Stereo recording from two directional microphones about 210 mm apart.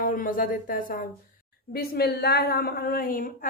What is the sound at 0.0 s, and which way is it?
A woman's voice, 40° left (ahead or behind).